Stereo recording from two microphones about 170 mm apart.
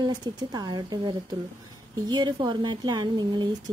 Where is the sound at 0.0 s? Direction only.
25° right (ahead or behind).